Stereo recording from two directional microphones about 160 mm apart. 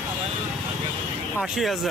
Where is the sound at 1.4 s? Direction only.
Centre (ahead or behind).